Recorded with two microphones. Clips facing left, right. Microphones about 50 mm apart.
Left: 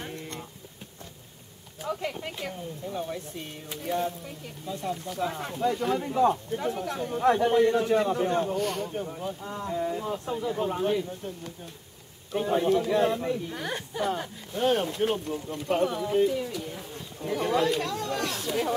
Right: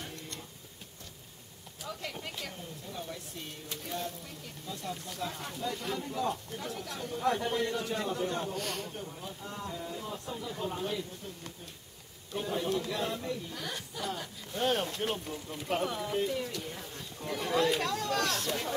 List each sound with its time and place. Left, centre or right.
0.0 s a sound: left
1.8 s speech: left
8.5 s speech: centre
8.9 s speech: left
12.3 s speech: left
14.5 s speech: centre